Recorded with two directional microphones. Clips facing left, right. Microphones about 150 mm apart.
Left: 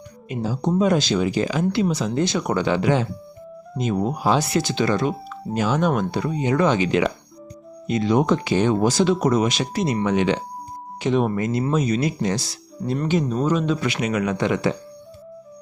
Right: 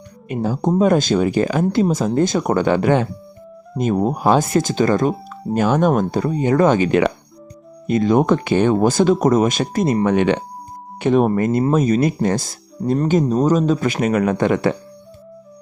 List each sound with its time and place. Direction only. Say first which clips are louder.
0.3 s speech: right 4 dB; 50° right (ahead or behind)